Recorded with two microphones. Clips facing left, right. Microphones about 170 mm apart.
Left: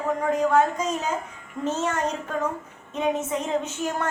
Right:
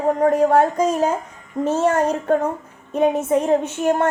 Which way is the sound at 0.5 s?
50° right (ahead or behind).